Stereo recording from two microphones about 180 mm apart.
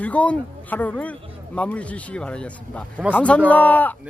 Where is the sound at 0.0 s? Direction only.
10° left (ahead or behind).